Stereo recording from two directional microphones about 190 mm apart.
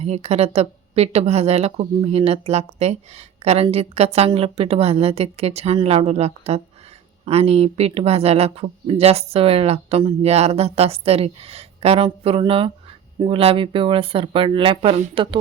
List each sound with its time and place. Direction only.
0.0 s a woman's voice: 35° right (ahead or behind)